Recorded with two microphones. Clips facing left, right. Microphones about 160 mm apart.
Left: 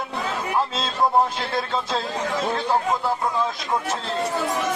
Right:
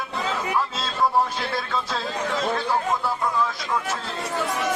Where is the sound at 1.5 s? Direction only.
25° left (ahead or behind).